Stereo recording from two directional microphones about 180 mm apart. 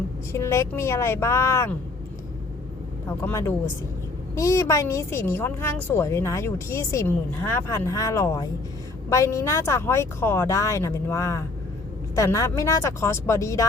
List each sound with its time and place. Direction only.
0.3 s speech: 15° left (ahead or behind)
3.2 s speech: 15° left (ahead or behind)